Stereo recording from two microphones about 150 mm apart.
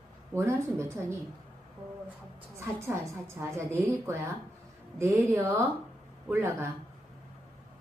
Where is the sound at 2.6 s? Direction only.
20° right (ahead or behind).